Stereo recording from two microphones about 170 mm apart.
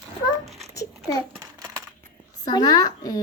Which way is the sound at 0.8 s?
20° left (ahead or behind).